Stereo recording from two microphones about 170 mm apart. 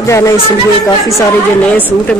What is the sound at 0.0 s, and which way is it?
Speech, 15° left (ahead or behind).